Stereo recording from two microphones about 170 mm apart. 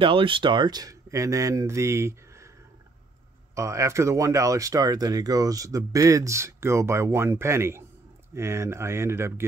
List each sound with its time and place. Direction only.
0.0 s speech: 30° right (ahead or behind)
3.5 s speech: 20° right (ahead or behind)